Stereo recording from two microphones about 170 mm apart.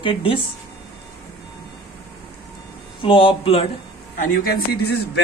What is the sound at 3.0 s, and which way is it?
Speech, 30° left (ahead or behind).